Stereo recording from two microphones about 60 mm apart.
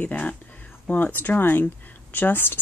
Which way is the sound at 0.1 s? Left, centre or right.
Left.